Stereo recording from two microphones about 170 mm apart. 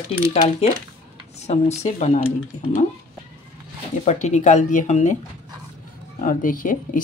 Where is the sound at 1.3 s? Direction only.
40° left (ahead or behind).